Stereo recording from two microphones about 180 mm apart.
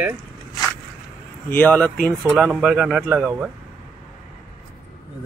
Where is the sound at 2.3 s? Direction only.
5° right (ahead or behind).